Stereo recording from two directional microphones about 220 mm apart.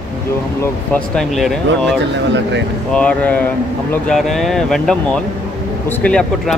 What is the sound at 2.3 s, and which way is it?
Speech, 55° right (ahead or behind).